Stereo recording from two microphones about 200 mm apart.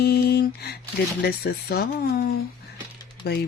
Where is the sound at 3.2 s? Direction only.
50° left (ahead or behind).